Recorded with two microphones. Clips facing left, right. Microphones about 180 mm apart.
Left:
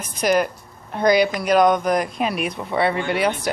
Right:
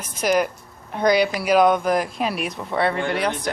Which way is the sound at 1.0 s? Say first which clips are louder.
Left 1 dB; 10° left (ahead or behind).